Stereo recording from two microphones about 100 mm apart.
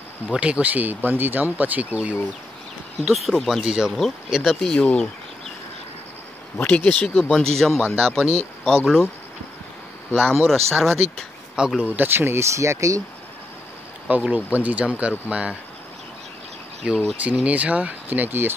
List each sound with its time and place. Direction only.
0.3 s speech: 10° right (ahead or behind)
3.1 s speech: centre (ahead or behind)
6.6 s speech: 15° left (ahead or behind)
10.1 s speech: 5° left (ahead or behind)
11.5 s speech: 10° right (ahead or behind)
12.1 s speech: 25° right (ahead or behind)
14.0 s speech: 15° right (ahead or behind)
16.8 s speech: 10° right (ahead or behind)